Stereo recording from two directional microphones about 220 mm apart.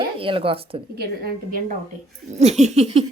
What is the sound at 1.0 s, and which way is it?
Speech, 40° right (ahead or behind).